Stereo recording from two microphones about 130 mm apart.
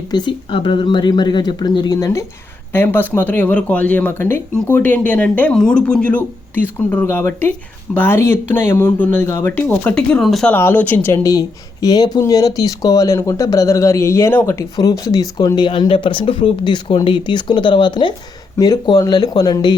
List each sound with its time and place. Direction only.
0.1 s speech: 35° left (ahead or behind); by 10.5 s centre (ahead or behind)
10.5 s speech: 15° left (ahead or behind)